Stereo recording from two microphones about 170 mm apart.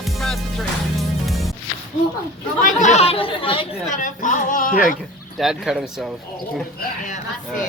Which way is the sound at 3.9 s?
50° left (ahead or behind).